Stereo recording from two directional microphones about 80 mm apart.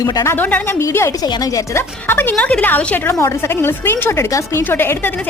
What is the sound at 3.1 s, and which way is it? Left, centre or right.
Speech, left.